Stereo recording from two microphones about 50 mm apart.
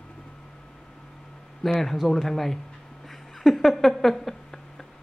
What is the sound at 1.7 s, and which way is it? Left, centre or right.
Speech, centre.